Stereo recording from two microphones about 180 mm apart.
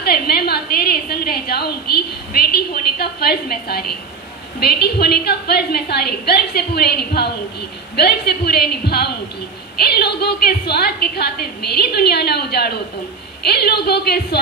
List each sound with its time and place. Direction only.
0.0 s a woman's voice: 60° left (ahead or behind)